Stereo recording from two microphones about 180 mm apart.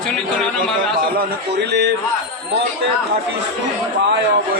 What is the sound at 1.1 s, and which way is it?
Speech, 65° right (ahead or behind).